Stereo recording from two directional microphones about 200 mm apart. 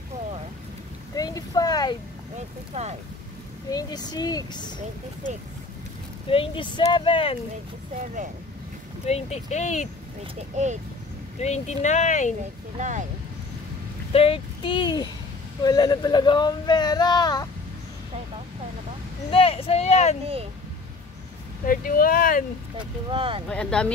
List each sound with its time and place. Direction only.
1.1 s a sound: 20° left (ahead or behind)
2.7 s speech: 35° right (ahead or behind)
3.7 s speech: 20° left (ahead or behind)
6.3 s speech: 25° left (ahead or behind)
9.0 s speech: 35° left (ahead or behind)
10.5 s speech: 35° right (ahead or behind)
11.4 s speech: 35° left (ahead or behind)
12.7 s speech: 40° right (ahead or behind)
14.1 s speech: 25° left (ahead or behind)
19.3 s speech: 30° left (ahead or behind)
21.6 s speech: 45° left (ahead or behind)
22.8 s speech: 25° right (ahead or behind)
23.5 s speech: 5° left (ahead or behind)